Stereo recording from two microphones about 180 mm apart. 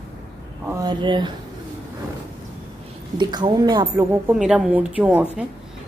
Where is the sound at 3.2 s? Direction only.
25° right (ahead or behind).